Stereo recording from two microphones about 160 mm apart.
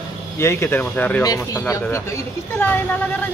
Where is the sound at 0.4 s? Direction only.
15° left (ahead or behind).